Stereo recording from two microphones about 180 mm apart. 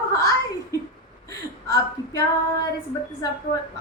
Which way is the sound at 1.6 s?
20° left (ahead or behind).